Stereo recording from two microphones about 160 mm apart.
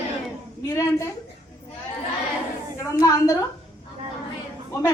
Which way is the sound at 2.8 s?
20° left (ahead or behind).